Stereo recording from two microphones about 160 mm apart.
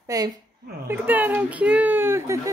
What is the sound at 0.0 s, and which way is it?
A woman's voice, 20° right (ahead or behind).